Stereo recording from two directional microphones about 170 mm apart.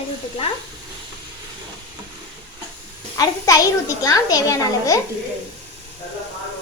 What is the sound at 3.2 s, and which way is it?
A woman's voice, 20° left (ahead or behind).